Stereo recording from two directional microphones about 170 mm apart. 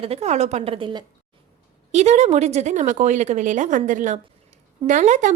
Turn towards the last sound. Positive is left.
turn(degrees=-45)  # may be behind; listen again after turning